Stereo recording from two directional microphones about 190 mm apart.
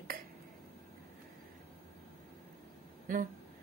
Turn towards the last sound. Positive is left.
turn(degrees=-40)  # may be behind; listen again after turning